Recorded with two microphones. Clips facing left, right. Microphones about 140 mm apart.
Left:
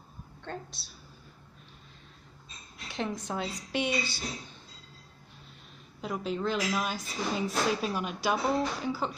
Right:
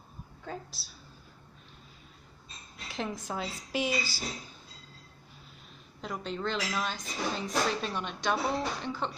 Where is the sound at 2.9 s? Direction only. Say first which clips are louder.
Left 2 dB; centre (ahead or behind).